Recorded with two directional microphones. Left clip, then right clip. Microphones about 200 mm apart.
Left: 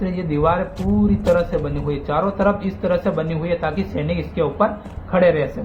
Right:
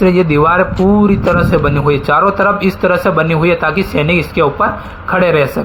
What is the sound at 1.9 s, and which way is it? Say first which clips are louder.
A man's voice: right 10 dB; 30° right (ahead or behind).